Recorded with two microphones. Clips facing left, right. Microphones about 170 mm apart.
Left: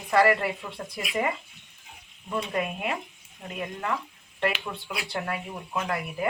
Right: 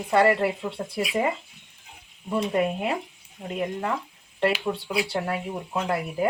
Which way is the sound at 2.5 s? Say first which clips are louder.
Right 5 dB; 30° right (ahead or behind).